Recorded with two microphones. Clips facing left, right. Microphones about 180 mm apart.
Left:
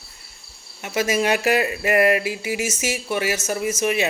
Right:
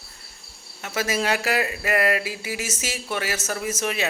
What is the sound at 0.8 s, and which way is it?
Speech, 15° left (ahead or behind).